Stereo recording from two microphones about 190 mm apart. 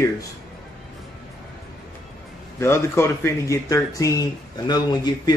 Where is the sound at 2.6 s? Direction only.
15° left (ahead or behind).